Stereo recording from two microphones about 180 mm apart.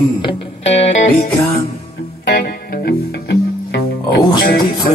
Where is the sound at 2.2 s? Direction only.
65° left (ahead or behind).